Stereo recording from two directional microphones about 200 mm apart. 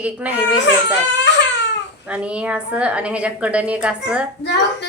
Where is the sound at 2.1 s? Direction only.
5° right (ahead or behind).